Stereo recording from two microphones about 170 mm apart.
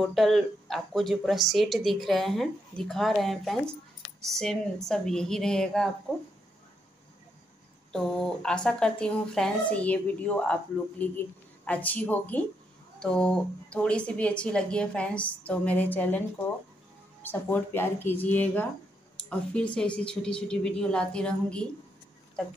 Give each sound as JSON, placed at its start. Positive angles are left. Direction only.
{"t": 0.0, "sound": "speech", "side_deg": 0}
{"t": 7.9, "sound": "a woman's voice", "side_deg": 5}